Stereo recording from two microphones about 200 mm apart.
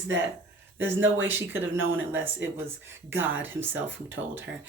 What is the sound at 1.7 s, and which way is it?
Speech, 80° right.